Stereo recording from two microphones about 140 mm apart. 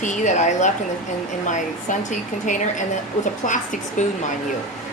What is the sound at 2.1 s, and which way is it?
Speech, 60° left (ahead or behind).